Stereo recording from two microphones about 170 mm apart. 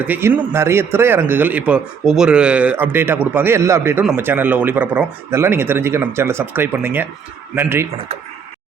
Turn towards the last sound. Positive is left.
turn(degrees=-15)  # may be behind; listen again after turning